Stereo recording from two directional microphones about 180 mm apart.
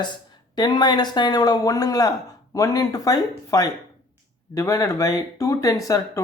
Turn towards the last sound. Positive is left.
turn(degrees=20)  # may be behind; listen again after turning